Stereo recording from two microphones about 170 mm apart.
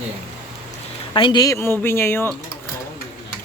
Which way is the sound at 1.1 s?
25° left (ahead or behind).